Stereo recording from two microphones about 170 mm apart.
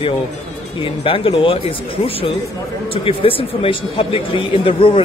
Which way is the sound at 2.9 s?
35° left (ahead or behind).